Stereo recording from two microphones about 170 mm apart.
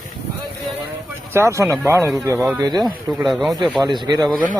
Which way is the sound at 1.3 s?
15° right (ahead or behind).